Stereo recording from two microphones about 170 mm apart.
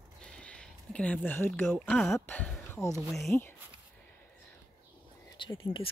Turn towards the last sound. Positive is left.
turn(degrees=30)  # may be behind; listen again after turning